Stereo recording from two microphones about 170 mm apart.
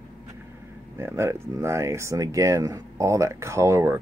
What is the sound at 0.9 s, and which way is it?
Speech, 15° right (ahead or behind).